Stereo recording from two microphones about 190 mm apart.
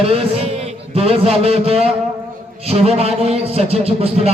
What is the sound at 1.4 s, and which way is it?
A man's voice, 30° right (ahead or behind).